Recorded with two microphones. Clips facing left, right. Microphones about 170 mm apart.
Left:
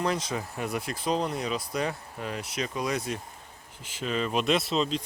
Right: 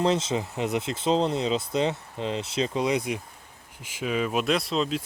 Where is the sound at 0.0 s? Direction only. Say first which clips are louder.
Right 5 dB; 25° right (ahead or behind).